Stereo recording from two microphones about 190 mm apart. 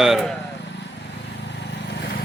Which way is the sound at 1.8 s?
65° left (ahead or behind).